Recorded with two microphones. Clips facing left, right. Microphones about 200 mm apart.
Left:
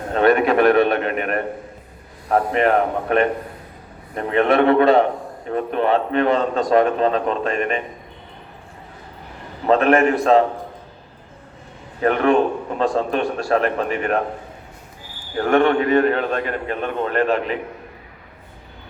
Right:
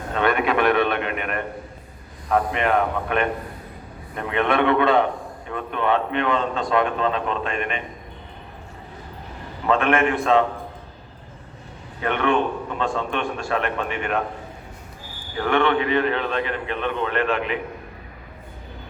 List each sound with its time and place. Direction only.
0.1 s a man's voice: 40° left (ahead or behind)
9.6 s a man's voice: 40° left (ahead or behind)
12.0 s a man's voice: 40° left (ahead or behind)
15.4 s a man's voice: 45° left (ahead or behind)